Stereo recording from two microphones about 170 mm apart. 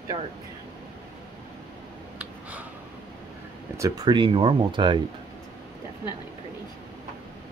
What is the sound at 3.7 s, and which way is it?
Speech, 20° right (ahead or behind).